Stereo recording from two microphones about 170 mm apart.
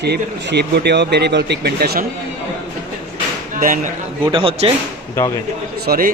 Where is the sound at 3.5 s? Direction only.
55° right (ahead or behind).